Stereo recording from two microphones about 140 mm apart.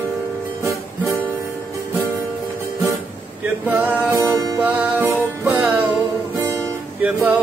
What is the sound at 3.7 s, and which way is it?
Music, 10° right (ahead or behind).